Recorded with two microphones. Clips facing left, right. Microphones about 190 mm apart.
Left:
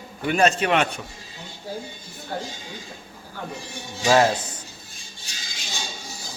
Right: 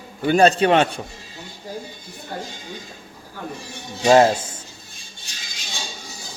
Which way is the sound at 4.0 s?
30° right (ahead or behind).